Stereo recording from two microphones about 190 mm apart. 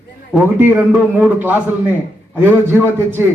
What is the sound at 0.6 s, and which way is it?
Speech, 10° right (ahead or behind).